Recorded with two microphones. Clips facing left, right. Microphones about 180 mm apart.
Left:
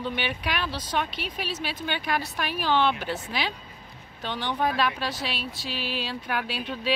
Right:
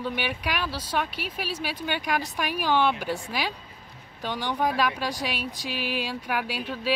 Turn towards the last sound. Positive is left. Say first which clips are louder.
# even
turn(degrees=-10)  # may be behind; listen again after turning